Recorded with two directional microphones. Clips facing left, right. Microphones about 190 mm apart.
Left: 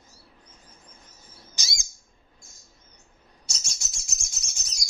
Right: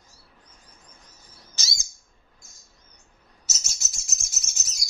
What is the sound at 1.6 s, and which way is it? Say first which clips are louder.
Bird: right 1 dB; 15° left (ahead or behind).